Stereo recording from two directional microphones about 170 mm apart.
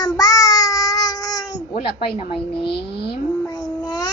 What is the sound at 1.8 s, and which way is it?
Speech, 35° left (ahead or behind).